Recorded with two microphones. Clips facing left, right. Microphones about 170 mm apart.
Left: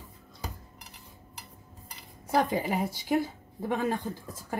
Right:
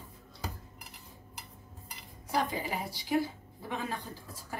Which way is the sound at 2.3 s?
50° left (ahead or behind).